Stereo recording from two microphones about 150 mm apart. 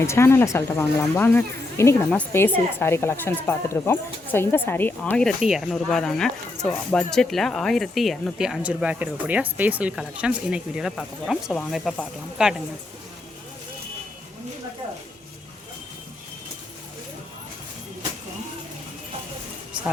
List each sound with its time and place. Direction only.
0.0 s speech: 20° left (ahead or behind); by 12.6 s 5° right (ahead or behind)